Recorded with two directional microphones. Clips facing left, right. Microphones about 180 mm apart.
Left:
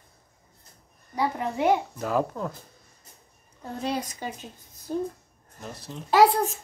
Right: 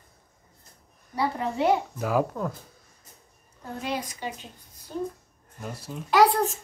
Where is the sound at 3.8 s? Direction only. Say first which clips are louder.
Left 2 dB; 40° left (ahead or behind).